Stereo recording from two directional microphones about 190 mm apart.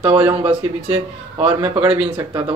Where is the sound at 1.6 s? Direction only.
10° right (ahead or behind).